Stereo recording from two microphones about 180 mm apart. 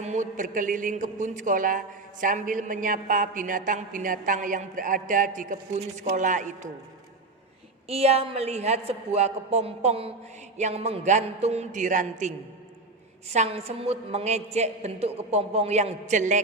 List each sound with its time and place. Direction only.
0.0 s a man's voice: 40° right (ahead or behind)
7.9 s a woman's voice: 35° right (ahead or behind)